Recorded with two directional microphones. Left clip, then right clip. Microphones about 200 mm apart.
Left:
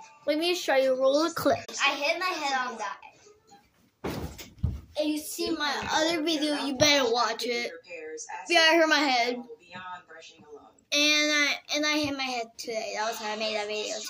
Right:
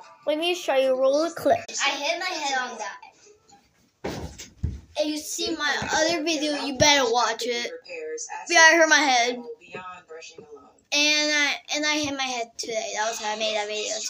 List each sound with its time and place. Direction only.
0.2 s a child's voice: 10° left (ahead or behind)
4.9 s a child's voice: 5° left (ahead or behind)
10.9 s a child's voice: 10° left (ahead or behind)